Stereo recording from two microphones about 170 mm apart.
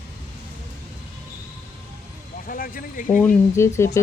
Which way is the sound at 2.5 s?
55° left (ahead or behind).